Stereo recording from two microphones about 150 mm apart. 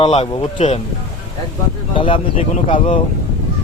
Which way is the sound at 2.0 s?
35° left (ahead or behind).